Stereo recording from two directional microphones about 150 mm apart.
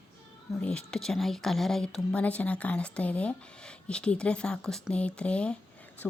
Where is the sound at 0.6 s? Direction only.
5° left (ahead or behind).